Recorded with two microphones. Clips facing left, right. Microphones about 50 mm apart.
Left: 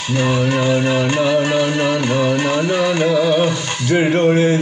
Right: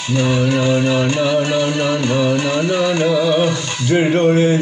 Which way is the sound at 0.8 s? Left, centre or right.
Left.